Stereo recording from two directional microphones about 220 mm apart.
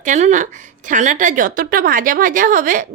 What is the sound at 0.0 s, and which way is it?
A woman's voice, 35° right (ahead or behind).